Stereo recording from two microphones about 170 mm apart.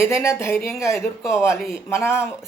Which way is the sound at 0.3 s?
15° left (ahead or behind).